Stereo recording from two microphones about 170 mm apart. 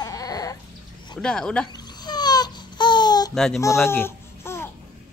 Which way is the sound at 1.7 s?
25° left (ahead or behind).